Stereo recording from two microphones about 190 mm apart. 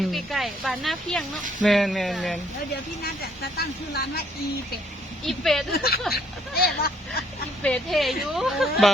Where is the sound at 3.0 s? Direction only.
55° left (ahead or behind).